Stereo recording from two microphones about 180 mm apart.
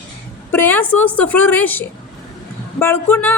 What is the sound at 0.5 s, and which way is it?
A woman's voice, 10° left (ahead or behind).